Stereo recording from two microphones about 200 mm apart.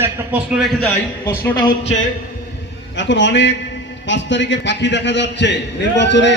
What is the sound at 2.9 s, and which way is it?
A man's voice, 65° left (ahead or behind).